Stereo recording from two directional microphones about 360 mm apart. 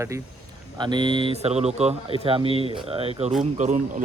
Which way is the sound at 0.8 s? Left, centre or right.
Centre.